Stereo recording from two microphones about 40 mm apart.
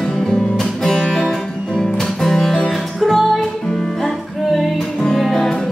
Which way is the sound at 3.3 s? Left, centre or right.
Centre.